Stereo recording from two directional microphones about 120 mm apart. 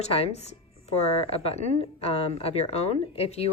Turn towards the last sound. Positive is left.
turn(degrees=60)  # may be behind; listen again after turning